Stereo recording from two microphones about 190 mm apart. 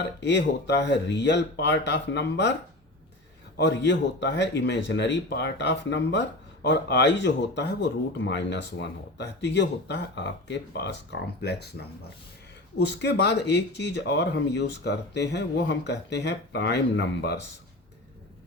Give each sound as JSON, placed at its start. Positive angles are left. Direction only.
{"t": 0.2, "sound": "speech", "side_deg": 65}
{"t": 3.6, "sound": "speech", "side_deg": 65}
{"t": 12.7, "sound": "speech", "side_deg": 65}